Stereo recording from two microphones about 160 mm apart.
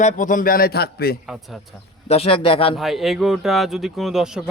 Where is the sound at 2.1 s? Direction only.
35° left (ahead or behind).